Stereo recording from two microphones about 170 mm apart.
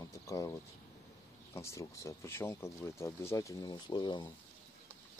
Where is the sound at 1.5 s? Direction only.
15° left (ahead or behind).